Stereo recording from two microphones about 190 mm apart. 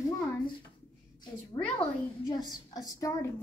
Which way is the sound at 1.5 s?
20° left (ahead or behind).